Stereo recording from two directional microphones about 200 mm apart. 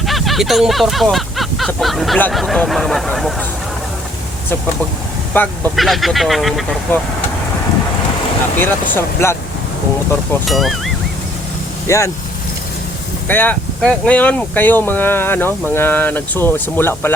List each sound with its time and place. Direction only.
0.0 s a sound: centre (ahead or behind)
5.3 s speech: 5° left (ahead or behind)
9.0 s speech: 15° left (ahead or behind)
10.4 s speech: centre (ahead or behind)
11.9 s speech: 15° left (ahead or behind)
13.2 s speech: 10° left (ahead or behind)